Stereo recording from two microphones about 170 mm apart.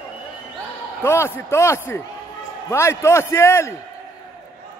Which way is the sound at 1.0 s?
15° left (ahead or behind).